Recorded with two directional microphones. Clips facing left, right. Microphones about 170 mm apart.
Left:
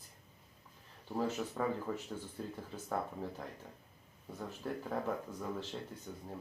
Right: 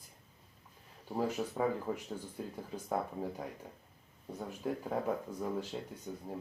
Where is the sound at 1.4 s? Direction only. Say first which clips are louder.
Right 3 dB; 20° right (ahead or behind).